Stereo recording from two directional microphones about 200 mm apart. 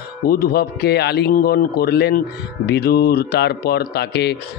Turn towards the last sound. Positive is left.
turn(degrees=55)  # may be behind; listen again after turning